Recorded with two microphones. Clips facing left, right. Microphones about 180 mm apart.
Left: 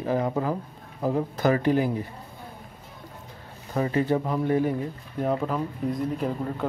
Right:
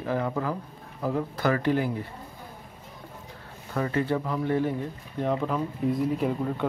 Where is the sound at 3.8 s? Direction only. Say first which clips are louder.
Left 3 dB; 20° left (ahead or behind).